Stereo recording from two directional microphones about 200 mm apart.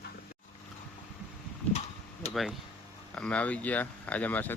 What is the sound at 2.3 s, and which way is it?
Speech, centre (ahead or behind).